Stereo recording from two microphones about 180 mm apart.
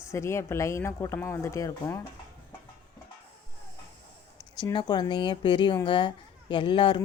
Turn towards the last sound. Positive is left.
turn(degrees=25)  # may be behind; listen again after turning